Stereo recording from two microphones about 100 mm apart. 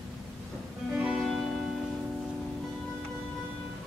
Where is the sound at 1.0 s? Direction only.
5° right (ahead or behind).